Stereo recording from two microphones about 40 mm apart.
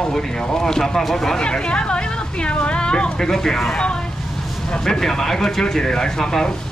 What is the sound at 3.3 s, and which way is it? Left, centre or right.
Speech, centre.